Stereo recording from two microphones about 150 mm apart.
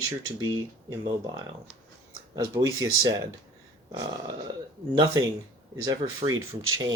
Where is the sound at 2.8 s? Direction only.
20° right (ahead or behind).